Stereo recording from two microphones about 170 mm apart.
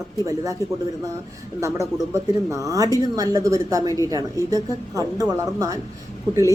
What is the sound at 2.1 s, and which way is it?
A woman's voice, 20° right (ahead or behind).